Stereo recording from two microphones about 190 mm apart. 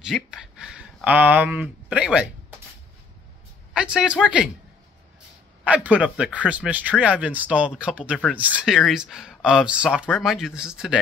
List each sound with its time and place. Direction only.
0.0 s speech: centre (ahead or behind)
3.7 s speech: 5° right (ahead or behind)
5.6 s speech: 5° right (ahead or behind)